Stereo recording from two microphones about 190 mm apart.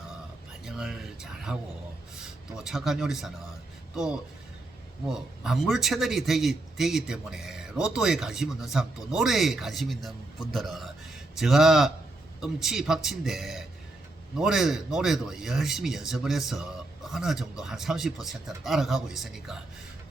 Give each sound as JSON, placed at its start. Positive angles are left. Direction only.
{"t": 0.6, "sound": "a sound", "side_deg": 0}
{"t": 2.6, "sound": "a man's voice", "side_deg": 0}
{"t": 5.0, "sound": "a man's voice", "side_deg": -5}